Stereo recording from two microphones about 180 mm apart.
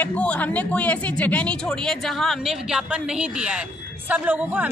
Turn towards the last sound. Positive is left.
turn(degrees=-10)  # may be behind; listen again after turning